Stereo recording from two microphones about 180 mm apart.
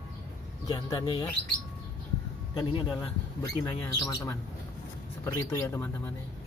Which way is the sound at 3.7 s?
15° left (ahead or behind).